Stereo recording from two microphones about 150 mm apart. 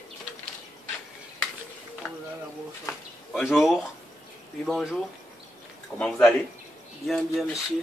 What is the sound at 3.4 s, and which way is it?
Speech, centre (ahead or behind).